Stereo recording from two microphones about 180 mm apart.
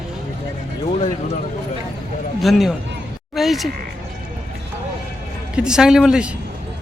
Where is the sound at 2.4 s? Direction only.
Centre (ahead or behind).